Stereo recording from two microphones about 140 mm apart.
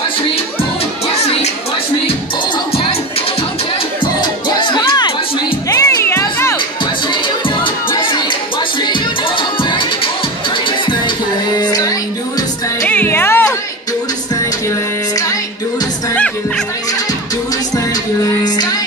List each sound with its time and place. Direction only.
1.1 s music: 50° left (ahead or behind)
4.0 s music: 35° left (ahead or behind); by 6.6 s 15° left (ahead or behind)
7.4 s music: 35° left (ahead or behind)
11.5 s music: 30° left (ahead or behind)
12.8 s music: 15° left (ahead or behind)
18.4 s music: 30° left (ahead or behind)